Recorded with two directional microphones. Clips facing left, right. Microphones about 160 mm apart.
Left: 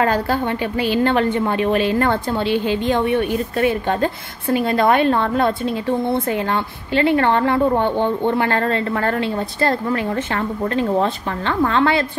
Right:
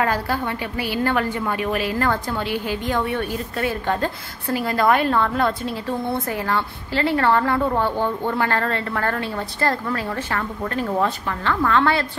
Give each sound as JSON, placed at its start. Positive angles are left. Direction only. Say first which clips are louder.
{"t": 0.0, "sound": "a woman's voice", "louder": "left 4 dB", "side_deg": 30}